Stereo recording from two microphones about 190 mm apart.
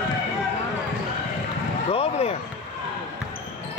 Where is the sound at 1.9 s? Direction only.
30° left (ahead or behind).